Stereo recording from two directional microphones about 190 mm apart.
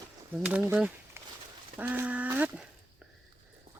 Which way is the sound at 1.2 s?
15° right (ahead or behind).